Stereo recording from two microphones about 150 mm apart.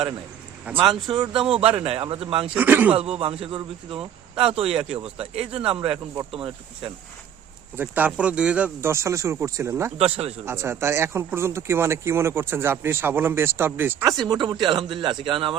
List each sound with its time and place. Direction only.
0.7 s speech: 10° right (ahead or behind)
1.1 s speech: 35° right (ahead or behind)
2.6 s speech: 10° right (ahead or behind)
3.2 s speech: 35° right (ahead or behind)
7.8 s speech: 10° right (ahead or behind)
10.0 s speech: 40° right (ahead or behind)
10.4 s speech: 15° right (ahead or behind)
14.3 s speech: 30° right (ahead or behind)